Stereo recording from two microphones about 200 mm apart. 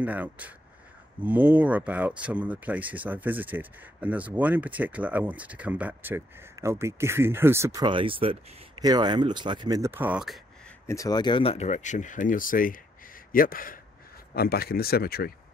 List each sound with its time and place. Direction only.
0.0 s speech: 10° right (ahead or behind)
10.9 s speech: 15° left (ahead or behind); by 15.3 s 50° left (ahead or behind)